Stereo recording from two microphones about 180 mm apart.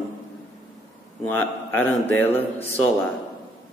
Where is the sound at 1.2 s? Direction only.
10° left (ahead or behind).